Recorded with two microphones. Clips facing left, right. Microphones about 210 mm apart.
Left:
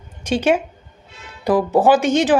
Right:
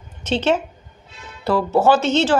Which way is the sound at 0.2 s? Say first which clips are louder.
Left 2 dB; 10° left (ahead or behind).